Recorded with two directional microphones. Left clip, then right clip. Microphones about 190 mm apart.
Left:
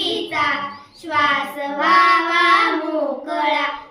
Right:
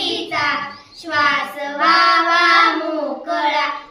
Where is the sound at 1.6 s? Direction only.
20° right (ahead or behind).